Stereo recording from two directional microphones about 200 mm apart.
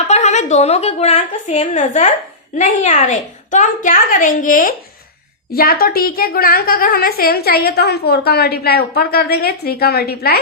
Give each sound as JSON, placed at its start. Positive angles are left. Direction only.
{"t": 0.1, "sound": "a woman's voice", "side_deg": 35}